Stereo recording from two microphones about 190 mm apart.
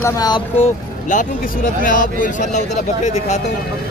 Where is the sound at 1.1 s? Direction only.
40° left (ahead or behind).